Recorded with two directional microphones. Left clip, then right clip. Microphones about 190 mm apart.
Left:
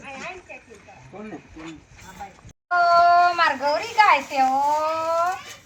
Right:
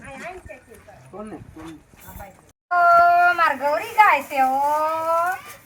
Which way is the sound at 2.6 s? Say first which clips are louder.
Right 2 dB; 5° right (ahead or behind).